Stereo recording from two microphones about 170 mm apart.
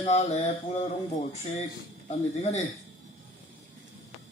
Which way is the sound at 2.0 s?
40° left (ahead or behind).